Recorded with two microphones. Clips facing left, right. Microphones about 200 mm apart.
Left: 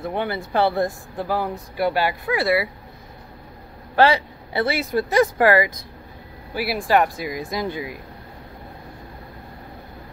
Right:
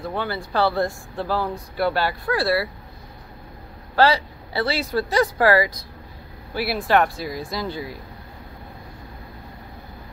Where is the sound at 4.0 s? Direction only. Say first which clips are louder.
Left 1 dB; 20° left (ahead or behind).